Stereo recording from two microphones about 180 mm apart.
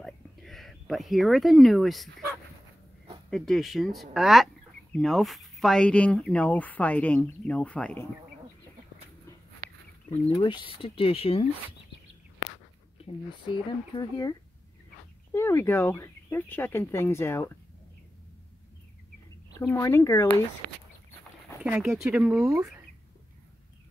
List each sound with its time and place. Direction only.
0.0 s whispering: centre (ahead or behind)
3.3 s speech: centre (ahead or behind)
10.3 s speech: 25° left (ahead or behind)
13.0 s speech: 25° left (ahead or behind)
15.3 s speech: 15° left (ahead or behind)
19.6 s speech: 15° left (ahead or behind)
21.6 s speech: 10° right (ahead or behind)